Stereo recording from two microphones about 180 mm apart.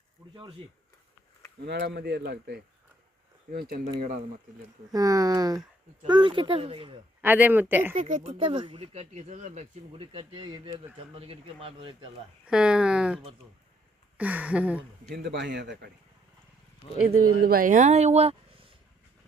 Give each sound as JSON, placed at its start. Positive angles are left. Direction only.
{"t": 1.6, "sound": "speech", "side_deg": -70}
{"t": 4.9, "sound": "speech", "side_deg": -20}
{"t": 7.2, "sound": "speech", "side_deg": -10}
{"t": 7.9, "sound": "speech", "side_deg": -45}
{"t": 8.2, "sound": "speech", "side_deg": -30}
{"t": 12.5, "sound": "speech", "side_deg": -5}
{"t": 15.1, "sound": "speech", "side_deg": -70}
{"t": 17.4, "sound": "speech", "side_deg": -50}